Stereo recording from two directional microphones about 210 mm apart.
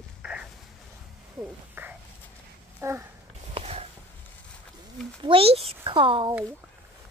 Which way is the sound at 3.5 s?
30° right (ahead or behind).